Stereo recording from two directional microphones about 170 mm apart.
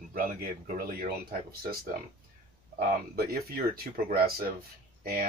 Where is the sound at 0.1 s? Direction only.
55° right (ahead or behind).